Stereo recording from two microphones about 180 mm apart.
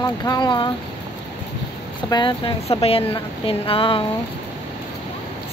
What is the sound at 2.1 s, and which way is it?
A woman's voice, 25° left (ahead or behind).